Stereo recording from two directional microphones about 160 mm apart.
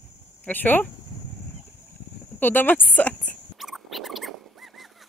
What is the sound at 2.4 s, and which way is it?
Speech, 10° left (ahead or behind).